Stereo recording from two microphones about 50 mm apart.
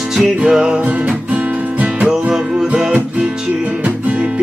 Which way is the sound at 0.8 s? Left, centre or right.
Right.